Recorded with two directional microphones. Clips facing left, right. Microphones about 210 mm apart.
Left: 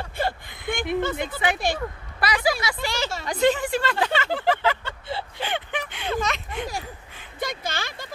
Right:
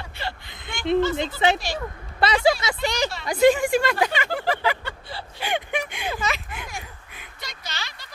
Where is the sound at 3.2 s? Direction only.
10° right (ahead or behind).